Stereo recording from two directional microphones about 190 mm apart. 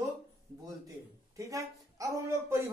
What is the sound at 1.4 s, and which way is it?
Speech, 15° right (ahead or behind).